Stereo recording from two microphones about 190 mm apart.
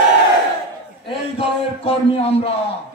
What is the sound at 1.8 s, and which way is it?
Speech, 30° left (ahead or behind).